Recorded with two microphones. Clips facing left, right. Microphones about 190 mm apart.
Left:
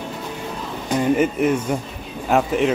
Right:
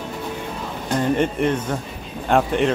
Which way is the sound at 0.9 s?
5° left (ahead or behind).